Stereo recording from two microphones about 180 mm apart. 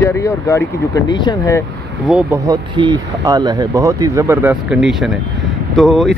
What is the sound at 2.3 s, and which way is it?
Speech, 20° right (ahead or behind).